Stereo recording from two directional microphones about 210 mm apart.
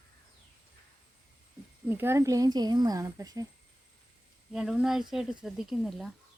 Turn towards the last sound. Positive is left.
turn(degrees=0)  # may be behind; listen again after turning